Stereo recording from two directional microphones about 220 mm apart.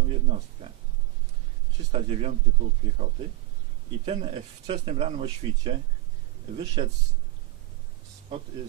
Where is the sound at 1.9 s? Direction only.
30° right (ahead or behind).